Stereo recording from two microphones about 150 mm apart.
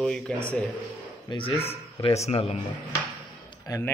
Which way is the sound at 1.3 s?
35° left (ahead or behind).